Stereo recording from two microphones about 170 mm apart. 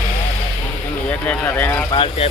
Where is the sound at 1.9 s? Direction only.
30° left (ahead or behind).